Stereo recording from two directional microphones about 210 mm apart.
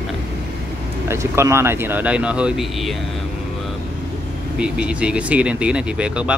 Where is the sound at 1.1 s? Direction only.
15° right (ahead or behind).